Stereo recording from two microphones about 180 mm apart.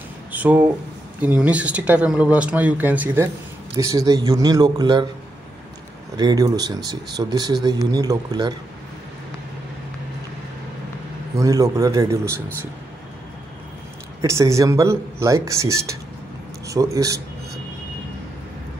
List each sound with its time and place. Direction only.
0.3 s speech: 10° right (ahead or behind); by 5.0 s 25° right (ahead or behind)
6.1 s speech: 25° right (ahead or behind)
11.3 s speech: 20° right (ahead or behind)
14.2 s speech: 15° right (ahead or behind)